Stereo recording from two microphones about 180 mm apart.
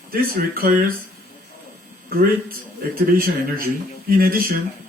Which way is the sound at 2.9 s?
55° right (ahead or behind).